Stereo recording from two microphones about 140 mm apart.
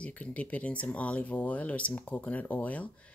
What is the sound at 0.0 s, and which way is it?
A woman's voice, 10° left (ahead or behind).